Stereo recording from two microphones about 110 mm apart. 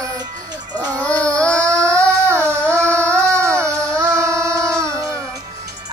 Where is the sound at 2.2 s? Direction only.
20° right (ahead or behind).